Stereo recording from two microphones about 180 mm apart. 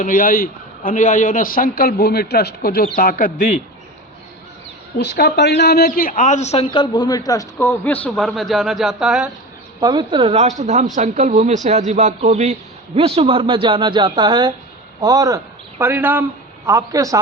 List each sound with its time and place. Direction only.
0.0 s a man's voice: 50° left (ahead or behind)
4.9 s a man's voice: 70° left (ahead or behind); by 7.9 s 15° left (ahead or behind)
8.0 s speech: 5° left (ahead or behind)
9.8 s a man's voice: 25° right (ahead or behind)